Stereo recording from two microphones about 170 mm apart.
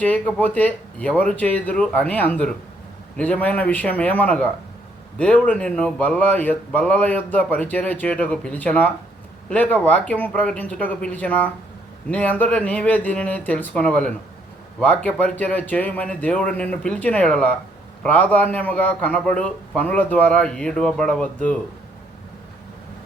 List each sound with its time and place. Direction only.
0.0 s a man's voice: 10° left (ahead or behind)